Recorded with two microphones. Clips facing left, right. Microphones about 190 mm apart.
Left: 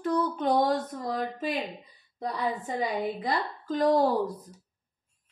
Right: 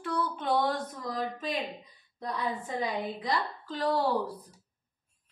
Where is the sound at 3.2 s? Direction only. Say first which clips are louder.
Left 2 dB; 45° left (ahead or behind).